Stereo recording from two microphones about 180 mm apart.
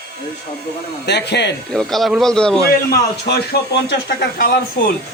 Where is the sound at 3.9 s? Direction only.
65° left (ahead or behind).